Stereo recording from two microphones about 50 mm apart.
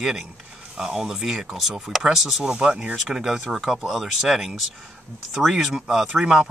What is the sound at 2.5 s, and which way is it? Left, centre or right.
Speech, right.